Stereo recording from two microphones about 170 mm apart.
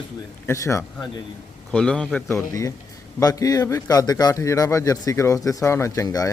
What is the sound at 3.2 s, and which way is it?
A man's voice, 20° left (ahead or behind).